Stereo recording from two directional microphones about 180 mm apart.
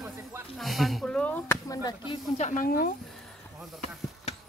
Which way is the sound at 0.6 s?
Centre (ahead or behind).